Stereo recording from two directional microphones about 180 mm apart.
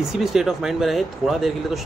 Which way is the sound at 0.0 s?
Centre (ahead or behind).